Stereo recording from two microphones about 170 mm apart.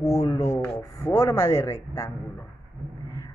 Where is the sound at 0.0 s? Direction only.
15° left (ahead or behind).